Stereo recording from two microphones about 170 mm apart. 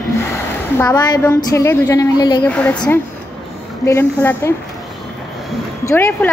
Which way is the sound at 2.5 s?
10° left (ahead or behind).